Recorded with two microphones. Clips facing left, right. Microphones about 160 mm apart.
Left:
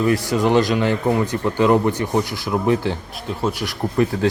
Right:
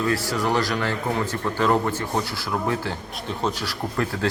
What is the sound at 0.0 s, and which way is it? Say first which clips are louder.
Speech: left 5 dB; 20° left (ahead or behind).